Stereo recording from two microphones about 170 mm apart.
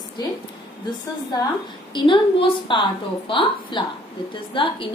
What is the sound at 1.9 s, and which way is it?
A woman's voice, 30° left (ahead or behind).